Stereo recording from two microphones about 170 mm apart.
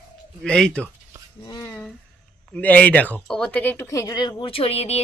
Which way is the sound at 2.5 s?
10° left (ahead or behind).